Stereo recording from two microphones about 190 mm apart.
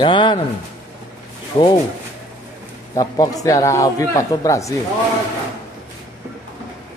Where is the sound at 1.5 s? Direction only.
25° left (ahead or behind).